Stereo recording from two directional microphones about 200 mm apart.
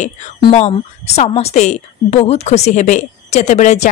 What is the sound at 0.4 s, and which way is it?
A woman's voice, 30° left (ahead or behind).